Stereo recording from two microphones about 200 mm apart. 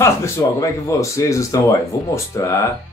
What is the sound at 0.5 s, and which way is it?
Speech, 15° left (ahead or behind).